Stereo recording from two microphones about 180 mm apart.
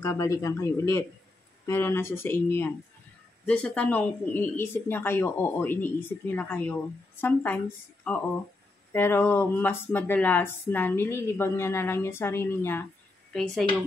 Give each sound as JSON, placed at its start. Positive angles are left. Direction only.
{"t": 0.0, "sound": "speech", "side_deg": 15}